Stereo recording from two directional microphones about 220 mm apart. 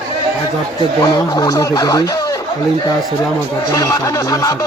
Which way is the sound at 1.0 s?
15° left (ahead or behind).